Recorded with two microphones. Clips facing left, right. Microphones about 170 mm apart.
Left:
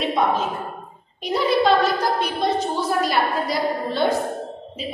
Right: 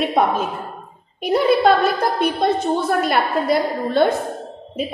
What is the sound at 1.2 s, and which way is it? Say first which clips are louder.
A woman's voice: right 4 dB; 55° right (ahead or behind).